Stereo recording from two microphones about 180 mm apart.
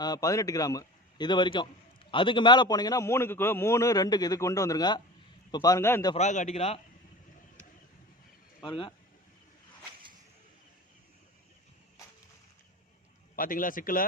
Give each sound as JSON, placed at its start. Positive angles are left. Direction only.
{"t": 0.0, "sound": "a man's voice", "side_deg": 20}
{"t": 6.1, "sound": "a man's voice", "side_deg": 40}
{"t": 8.6, "sound": "a man's voice", "side_deg": 25}
{"t": 13.3, "sound": "a man's voice", "side_deg": 50}